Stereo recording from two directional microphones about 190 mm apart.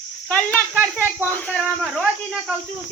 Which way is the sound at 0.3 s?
10° left (ahead or behind).